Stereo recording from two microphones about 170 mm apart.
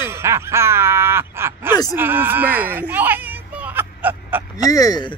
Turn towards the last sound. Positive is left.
turn(degrees=20)  # may be behind; listen again after turning